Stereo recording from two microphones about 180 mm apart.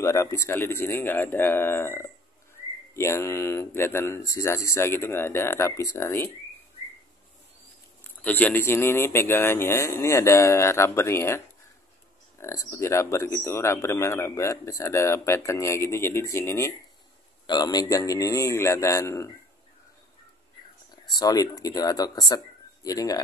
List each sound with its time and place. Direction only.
0.0 s speech: 15° left (ahead or behind)
8.2 s speech: 10° left (ahead or behind)
20.9 s speech: 20° left (ahead or behind)